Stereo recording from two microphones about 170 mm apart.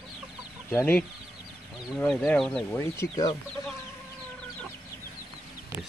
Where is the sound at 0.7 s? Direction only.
15° left (ahead or behind).